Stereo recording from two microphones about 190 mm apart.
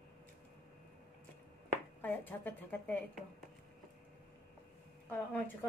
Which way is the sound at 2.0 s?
10° left (ahead or behind).